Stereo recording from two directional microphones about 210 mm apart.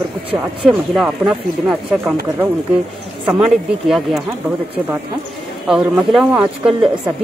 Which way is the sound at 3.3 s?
5° right (ahead or behind).